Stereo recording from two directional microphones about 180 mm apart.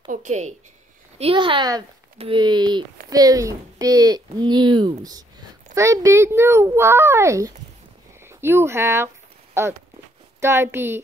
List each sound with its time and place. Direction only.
0.1 s speech: 40° right (ahead or behind); by 7.5 s 15° right (ahead or behind)
8.2 s a sound: 15° right (ahead or behind)
10.4 s speech: 15° right (ahead or behind)